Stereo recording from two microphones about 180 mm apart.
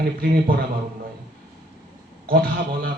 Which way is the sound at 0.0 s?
55° right (ahead or behind).